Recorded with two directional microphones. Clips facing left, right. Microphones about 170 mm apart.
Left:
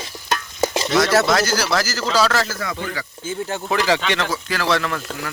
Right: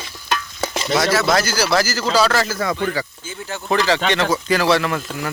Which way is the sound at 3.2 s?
50° left (ahead or behind).